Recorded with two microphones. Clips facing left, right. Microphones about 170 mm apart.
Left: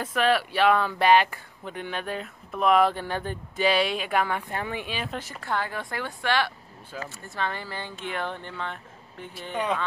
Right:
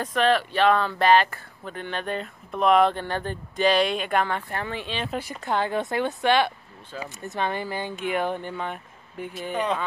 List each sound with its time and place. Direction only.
0.0 s speech: 10° left (ahead or behind)
5.4 s a woman's voice: 20° right (ahead or behind)